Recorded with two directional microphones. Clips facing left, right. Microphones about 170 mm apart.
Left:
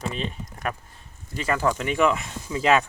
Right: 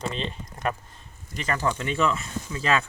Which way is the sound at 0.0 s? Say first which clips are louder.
Left 1 dB; 10° left (ahead or behind).